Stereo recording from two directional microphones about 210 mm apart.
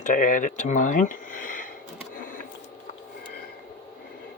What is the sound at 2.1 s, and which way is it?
Printer, 40° left (ahead or behind).